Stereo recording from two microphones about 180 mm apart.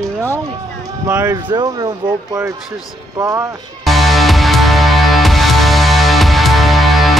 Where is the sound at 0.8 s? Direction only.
10° right (ahead or behind).